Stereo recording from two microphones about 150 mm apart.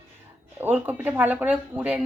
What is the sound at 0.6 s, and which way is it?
Speech, 10° right (ahead or behind).